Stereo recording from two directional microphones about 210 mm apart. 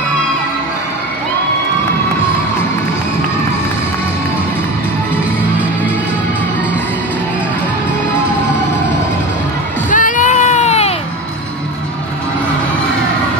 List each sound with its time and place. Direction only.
9.8 s music: 40° left (ahead or behind)